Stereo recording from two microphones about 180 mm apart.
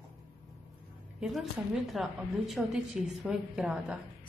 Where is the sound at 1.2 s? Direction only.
Centre (ahead or behind).